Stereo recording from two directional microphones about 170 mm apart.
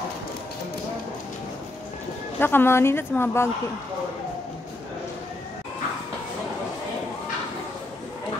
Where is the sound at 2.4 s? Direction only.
10° left (ahead or behind).